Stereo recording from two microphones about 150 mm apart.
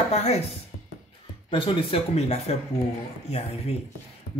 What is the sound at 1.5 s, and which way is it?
Speech, 35° left (ahead or behind).